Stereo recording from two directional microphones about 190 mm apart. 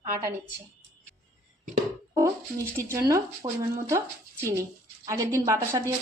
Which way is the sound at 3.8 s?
15° right (ahead or behind).